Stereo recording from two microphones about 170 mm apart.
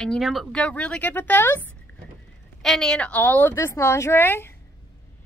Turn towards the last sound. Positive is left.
turn(degrees=15)  # may be behind; listen again after turning